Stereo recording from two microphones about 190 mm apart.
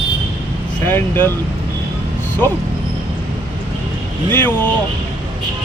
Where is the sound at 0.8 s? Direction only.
10° left (ahead or behind).